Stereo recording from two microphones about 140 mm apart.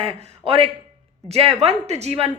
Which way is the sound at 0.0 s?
40° right (ahead or behind).